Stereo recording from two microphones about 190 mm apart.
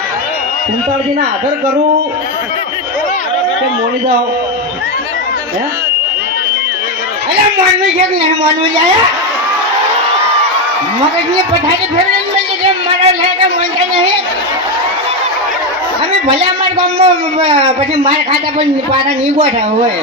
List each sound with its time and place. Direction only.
17.0 s a man's voice: 30° right (ahead or behind)